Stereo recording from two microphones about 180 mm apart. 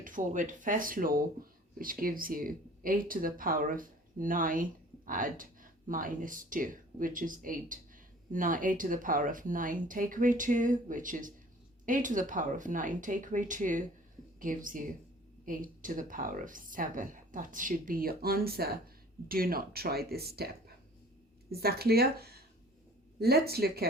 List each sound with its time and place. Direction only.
0.0 s speech: 45° right (ahead or behind)
21.5 s speech: 60° right (ahead or behind)